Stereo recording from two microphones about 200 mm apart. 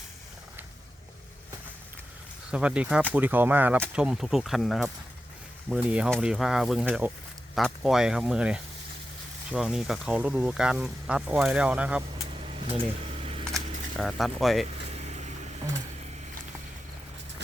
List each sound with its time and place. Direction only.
2.5 s speech: 5° right (ahead or behind)
12.4 s vehicle: 30° right (ahead or behind)
13.9 s speech: centre (ahead or behind)
14.9 s vehicle: 35° right (ahead or behind)